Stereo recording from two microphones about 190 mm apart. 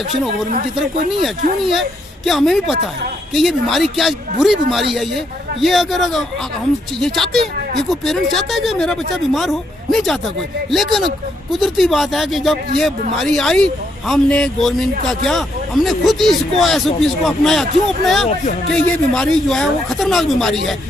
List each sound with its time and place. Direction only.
0.8 s a man's voice: centre (ahead or behind)
7.8 s a man's voice: centre (ahead or behind)